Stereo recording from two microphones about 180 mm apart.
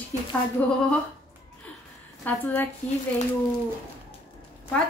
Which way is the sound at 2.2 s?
10° left (ahead or behind).